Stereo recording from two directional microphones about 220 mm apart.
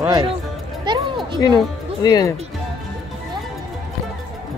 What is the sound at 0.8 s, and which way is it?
Music, 20° right (ahead or behind).